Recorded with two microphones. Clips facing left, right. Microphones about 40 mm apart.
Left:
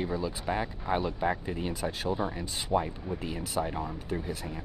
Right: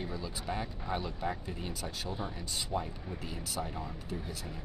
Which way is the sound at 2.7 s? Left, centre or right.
Left.